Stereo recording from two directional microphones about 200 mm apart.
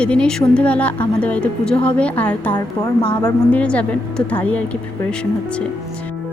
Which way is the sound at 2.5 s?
20° left (ahead or behind).